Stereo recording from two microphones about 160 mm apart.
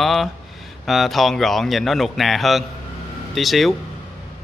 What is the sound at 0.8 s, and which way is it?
A man's voice, centre (ahead or behind).